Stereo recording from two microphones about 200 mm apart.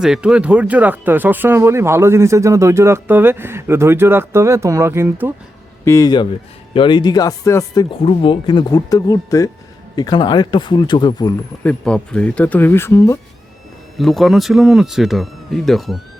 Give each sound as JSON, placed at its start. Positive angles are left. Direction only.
{"t": 0.0, "sound": "speech", "side_deg": -5}
{"t": 5.8, "sound": "speech", "side_deg": 15}
{"t": 11.6, "sound": "speech", "side_deg": 5}
{"t": 14.0, "sound": "speech", "side_deg": 0}